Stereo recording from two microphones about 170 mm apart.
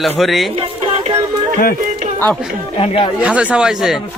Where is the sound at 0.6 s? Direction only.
35° right (ahead or behind).